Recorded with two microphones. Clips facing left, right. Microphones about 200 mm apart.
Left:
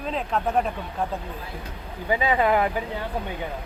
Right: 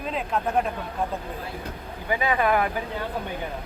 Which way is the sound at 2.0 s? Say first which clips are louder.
Left 2 dB; 25° left (ahead or behind).